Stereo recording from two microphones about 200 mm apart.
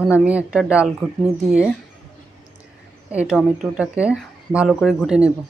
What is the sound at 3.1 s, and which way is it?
Speech, 5° right (ahead or behind).